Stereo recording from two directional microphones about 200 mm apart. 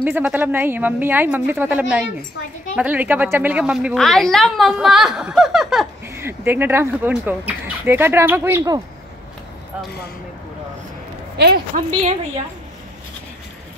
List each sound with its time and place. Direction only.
0.0 s a woman's voice: 10° right (ahead or behind)
11.3 s speech: 55° right (ahead or behind)